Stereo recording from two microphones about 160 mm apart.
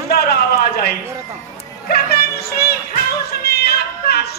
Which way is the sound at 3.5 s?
80° left.